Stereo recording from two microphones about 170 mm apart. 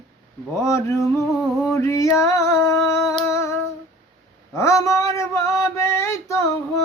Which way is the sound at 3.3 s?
15° left (ahead or behind).